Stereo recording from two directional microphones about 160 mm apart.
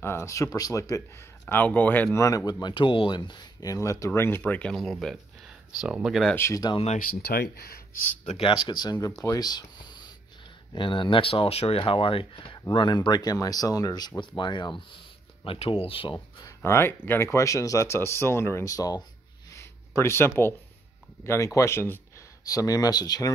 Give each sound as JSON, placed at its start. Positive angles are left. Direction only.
{"t": 0.0, "sound": "speech", "side_deg": 15}
{"t": 6.3, "sound": "speech", "side_deg": 20}
{"t": 7.0, "sound": "speech", "side_deg": 70}
{"t": 8.3, "sound": "speech", "side_deg": 35}
{"t": 16.6, "sound": "speech", "side_deg": 15}
{"t": 19.5, "sound": "a sound", "side_deg": 20}
{"t": 21.2, "sound": "speech", "side_deg": 20}